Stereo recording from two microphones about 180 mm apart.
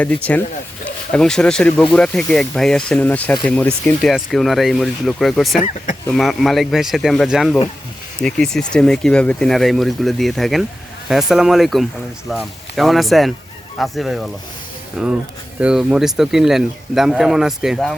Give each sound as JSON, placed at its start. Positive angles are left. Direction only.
{"t": 0.0, "sound": "speech", "side_deg": 10}
{"t": 5.5, "sound": "speech", "side_deg": 45}
{"t": 6.1, "sound": "speech", "side_deg": 0}